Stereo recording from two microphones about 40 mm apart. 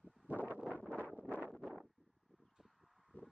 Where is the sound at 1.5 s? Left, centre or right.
Centre.